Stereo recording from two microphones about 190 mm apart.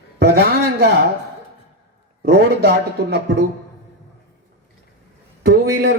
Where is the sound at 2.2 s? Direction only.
60° right (ahead or behind).